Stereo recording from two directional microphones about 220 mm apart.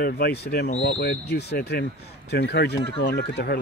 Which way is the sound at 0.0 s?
45° left (ahead or behind).